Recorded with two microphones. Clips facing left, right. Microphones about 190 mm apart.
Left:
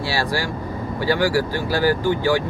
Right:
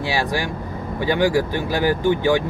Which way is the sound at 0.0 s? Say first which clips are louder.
Right 1 dB; 20° right (ahead or behind).